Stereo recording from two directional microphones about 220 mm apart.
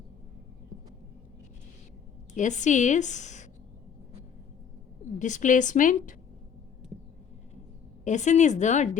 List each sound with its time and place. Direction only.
2.3 s a woman's voice: 35° left (ahead or behind)
5.2 s a woman's voice: 35° left (ahead or behind)
8.0 s a woman's voice: 35° left (ahead or behind)